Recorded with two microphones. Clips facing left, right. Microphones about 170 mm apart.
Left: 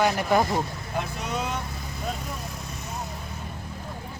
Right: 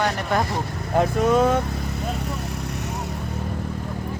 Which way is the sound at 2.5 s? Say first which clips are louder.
Right 7 dB; 75° right (ahead or behind).